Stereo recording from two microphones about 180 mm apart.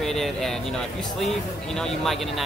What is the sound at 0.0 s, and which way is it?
Speech, centre (ahead or behind).